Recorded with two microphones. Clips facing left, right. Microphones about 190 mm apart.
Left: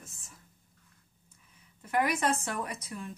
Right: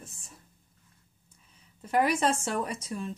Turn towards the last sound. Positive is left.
turn(degrees=-30)  # may be behind; listen again after turning